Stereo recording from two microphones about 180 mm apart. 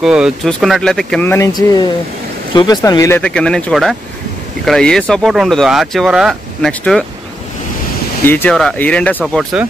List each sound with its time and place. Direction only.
0.0 s speech: 5° right (ahead or behind); by 3.2 s 15° left (ahead or behind)
3.2 s speech: 5° left (ahead or behind)
8.3 s speech: 10° left (ahead or behind)